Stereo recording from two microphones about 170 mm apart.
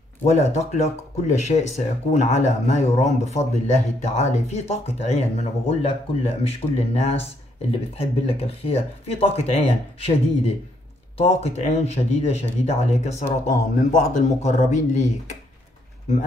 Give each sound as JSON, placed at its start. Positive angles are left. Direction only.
{"t": 0.2, "sound": "speech", "side_deg": 40}